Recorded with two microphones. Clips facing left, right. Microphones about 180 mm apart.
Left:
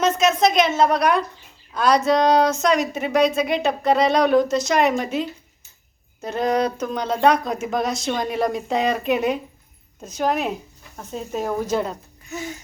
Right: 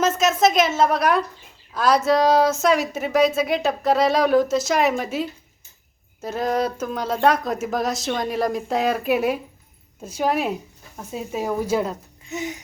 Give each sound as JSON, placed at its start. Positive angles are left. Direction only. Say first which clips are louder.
{"t": 0.0, "sound": "a woman's voice", "louder": "even", "side_deg": 0}
{"t": 6.2, "sound": "speech", "louder": "left 2 dB", "side_deg": 0}
{"t": 12.3, "sound": "a sound", "louder": "right 2 dB", "side_deg": -20}